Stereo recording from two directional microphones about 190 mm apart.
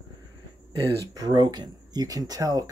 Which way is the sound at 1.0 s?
20° right (ahead or behind).